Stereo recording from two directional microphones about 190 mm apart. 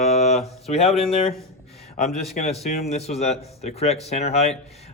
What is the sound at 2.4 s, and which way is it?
Speech, 40° left (ahead or behind).